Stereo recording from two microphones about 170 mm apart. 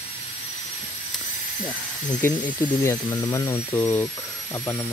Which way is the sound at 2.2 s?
15° left (ahead or behind).